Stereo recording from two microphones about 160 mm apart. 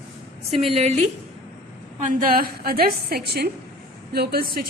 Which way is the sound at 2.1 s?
60° right (ahead or behind).